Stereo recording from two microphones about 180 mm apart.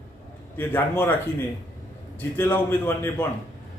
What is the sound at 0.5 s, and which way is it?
Speech, 10° left (ahead or behind).